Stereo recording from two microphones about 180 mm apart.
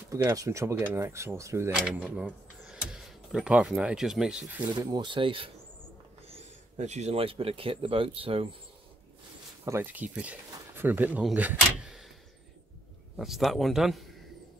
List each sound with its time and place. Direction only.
0.1 s speech: 15° right (ahead or behind)
4.8 s speech: 25° right (ahead or behind)
9.7 s speech: 10° right (ahead or behind)
13.1 s a man's voice: centre (ahead or behind)